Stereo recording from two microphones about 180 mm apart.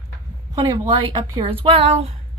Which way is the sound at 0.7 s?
25° right (ahead or behind).